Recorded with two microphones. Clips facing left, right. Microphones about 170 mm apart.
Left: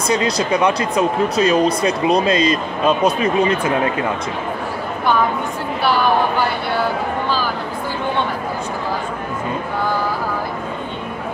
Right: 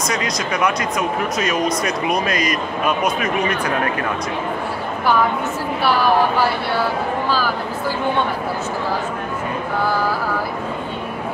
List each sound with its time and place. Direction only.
0.1 s speech: 30° left (ahead or behind)